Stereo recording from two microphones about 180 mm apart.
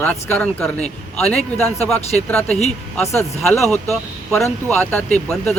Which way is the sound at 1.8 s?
35° left (ahead or behind).